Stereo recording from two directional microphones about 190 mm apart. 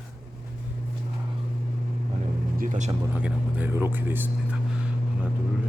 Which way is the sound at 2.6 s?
40° right (ahead or behind).